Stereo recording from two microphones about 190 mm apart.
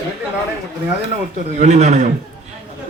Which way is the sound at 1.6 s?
35° right (ahead or behind).